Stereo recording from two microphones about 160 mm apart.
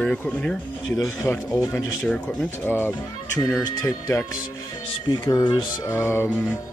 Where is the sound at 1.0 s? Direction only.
20° left (ahead or behind).